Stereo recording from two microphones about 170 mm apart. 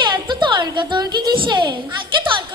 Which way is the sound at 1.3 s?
25° right (ahead or behind).